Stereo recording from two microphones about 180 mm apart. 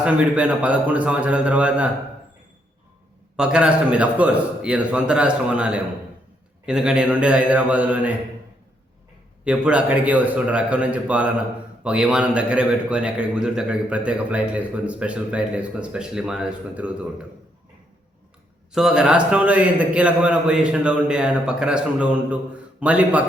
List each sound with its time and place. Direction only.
0.0 s a man's voice: 5° right (ahead or behind)
3.3 s a man's voice: 5° right (ahead or behind)
9.4 s a man's voice: 5° right (ahead or behind)
18.7 s a man's voice: 5° right (ahead or behind)